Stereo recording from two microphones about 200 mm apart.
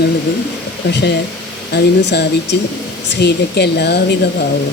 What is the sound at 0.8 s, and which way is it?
Speech, 60° left (ahead or behind).